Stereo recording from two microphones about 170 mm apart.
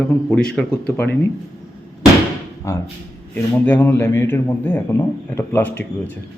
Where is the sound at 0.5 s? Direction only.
10° left (ahead or behind).